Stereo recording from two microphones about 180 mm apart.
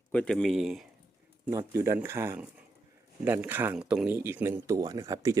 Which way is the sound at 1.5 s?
15° right (ahead or behind).